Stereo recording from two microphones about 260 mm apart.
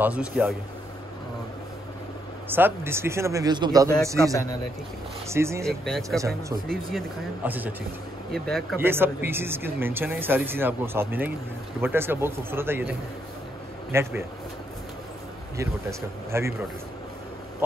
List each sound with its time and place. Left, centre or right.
0.0 s speech: centre
2.5 s speech: centre
5.7 s speech: centre
6.0 s speech: centre
13.9 s speech: centre
15.5 s speech: centre